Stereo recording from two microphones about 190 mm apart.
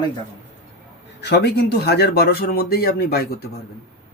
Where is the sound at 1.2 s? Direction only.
60° left (ahead or behind).